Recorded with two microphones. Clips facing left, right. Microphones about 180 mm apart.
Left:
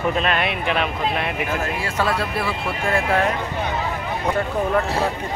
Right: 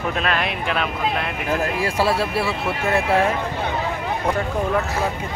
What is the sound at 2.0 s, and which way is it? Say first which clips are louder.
Speech: right 1 dB; 30° right (ahead or behind).